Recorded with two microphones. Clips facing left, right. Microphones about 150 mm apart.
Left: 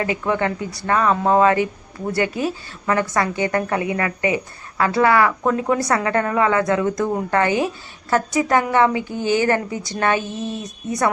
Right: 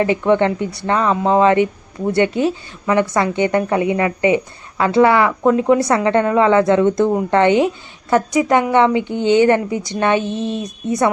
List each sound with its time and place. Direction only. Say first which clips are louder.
0.0 s speech: right 6 dB; 25° right (ahead or behind)